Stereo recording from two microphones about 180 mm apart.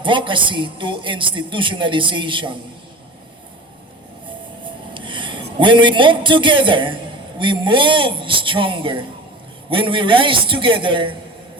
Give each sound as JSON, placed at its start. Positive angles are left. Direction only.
{"t": 0.0, "sound": "speech", "side_deg": -25}
{"t": 4.9, "sound": "a man's voice", "side_deg": -30}